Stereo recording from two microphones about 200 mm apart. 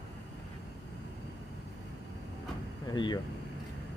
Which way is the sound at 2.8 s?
20° left (ahead or behind).